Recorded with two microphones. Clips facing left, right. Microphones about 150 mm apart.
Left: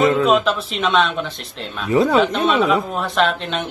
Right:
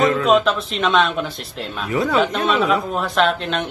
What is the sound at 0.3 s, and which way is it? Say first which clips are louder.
Speech: right 1 dB; centre (ahead or behind).